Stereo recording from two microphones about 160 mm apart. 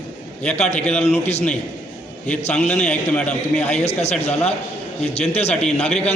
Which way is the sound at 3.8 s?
40° left (ahead or behind).